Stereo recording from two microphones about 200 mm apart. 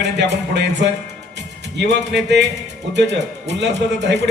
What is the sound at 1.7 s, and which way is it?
A man's voice, 60° right (ahead or behind).